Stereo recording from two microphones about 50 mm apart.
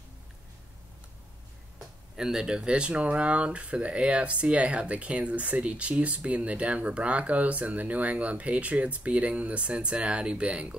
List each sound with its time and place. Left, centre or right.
2.1 s speech: centre